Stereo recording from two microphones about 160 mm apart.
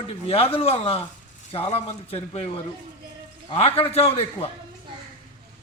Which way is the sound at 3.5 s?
35° left (ahead or behind).